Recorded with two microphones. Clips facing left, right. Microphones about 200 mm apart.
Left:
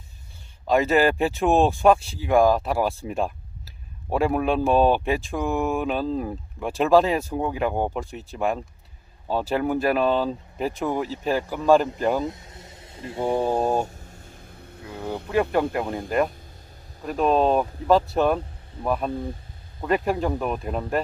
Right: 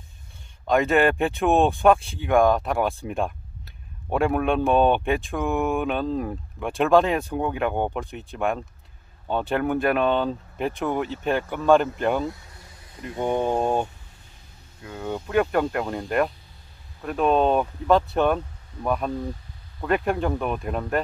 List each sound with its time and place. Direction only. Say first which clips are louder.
0.7 s speech: even; centre (ahead or behind)
12.3 s vehicle: even; 20° left (ahead or behind)
13.1 s speech: even; 30° left (ahead or behind)
13.6 s speech: even; 5° left (ahead or behind)
15.2 s speech: even; centre (ahead or behind)